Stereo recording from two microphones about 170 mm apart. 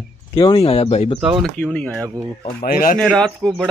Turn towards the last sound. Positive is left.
turn(degrees=0)  # may be behind; listen again after turning